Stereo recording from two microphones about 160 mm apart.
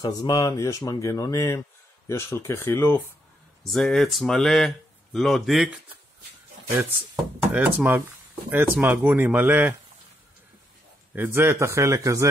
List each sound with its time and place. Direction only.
0.0 s speech: 25° left (ahead or behind)
3.6 s speech: centre (ahead or behind)
7.5 s speech: 10° right (ahead or behind)
11.1 s speech: 15° right (ahead or behind)